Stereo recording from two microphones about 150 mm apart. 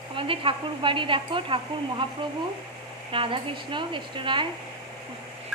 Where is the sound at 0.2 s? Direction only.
35° right (ahead or behind).